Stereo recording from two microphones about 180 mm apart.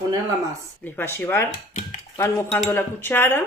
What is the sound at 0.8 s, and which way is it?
Speech, 10° left (ahead or behind).